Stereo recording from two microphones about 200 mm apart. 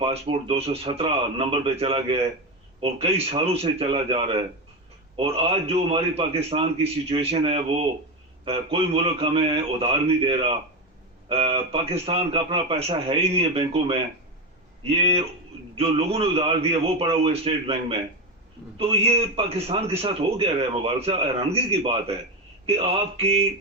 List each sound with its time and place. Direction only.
0.0 s a man's voice: 30° right (ahead or behind)